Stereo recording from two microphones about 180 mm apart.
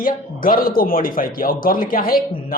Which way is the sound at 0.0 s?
50° left (ahead or behind).